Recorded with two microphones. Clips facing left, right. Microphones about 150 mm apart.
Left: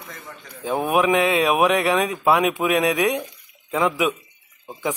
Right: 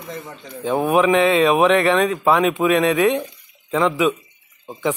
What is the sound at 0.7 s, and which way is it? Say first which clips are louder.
Speech: right 3 dB; 5° left (ahead or behind).